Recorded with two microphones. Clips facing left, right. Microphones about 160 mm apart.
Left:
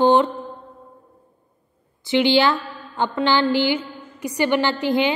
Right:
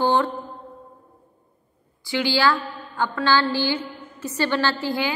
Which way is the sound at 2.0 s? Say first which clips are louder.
Left 4 dB; 20° left (ahead or behind).